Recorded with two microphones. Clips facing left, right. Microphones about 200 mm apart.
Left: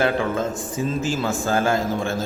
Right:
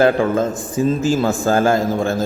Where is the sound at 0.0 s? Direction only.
40° right (ahead or behind).